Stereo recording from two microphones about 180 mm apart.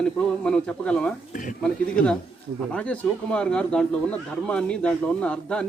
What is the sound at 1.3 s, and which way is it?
Speech, 45° left (ahead or behind).